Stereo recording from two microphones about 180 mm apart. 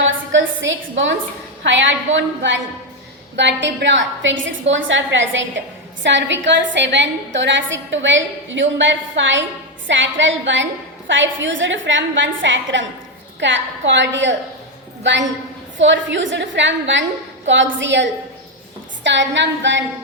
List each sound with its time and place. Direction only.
0.0 s a woman's voice: 90° right